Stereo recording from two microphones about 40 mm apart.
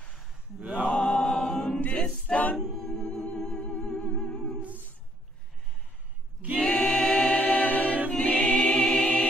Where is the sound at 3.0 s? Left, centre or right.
Centre.